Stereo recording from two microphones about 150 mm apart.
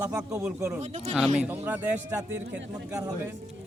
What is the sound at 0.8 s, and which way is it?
Speech, 45° right (ahead or behind).